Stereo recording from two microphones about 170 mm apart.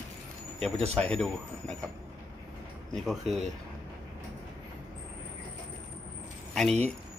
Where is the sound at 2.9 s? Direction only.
Centre (ahead or behind).